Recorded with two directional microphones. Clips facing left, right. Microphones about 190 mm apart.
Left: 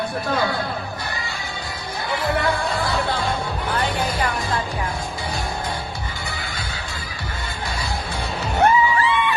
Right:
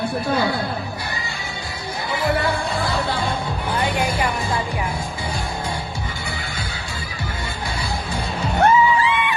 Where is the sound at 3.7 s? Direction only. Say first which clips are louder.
Right 2 dB; 10° right (ahead or behind).